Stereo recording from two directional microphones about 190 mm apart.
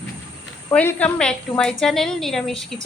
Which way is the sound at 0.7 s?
10° left (ahead or behind).